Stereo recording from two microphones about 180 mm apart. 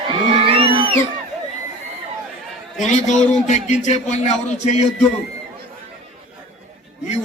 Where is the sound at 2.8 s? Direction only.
40° left (ahead or behind).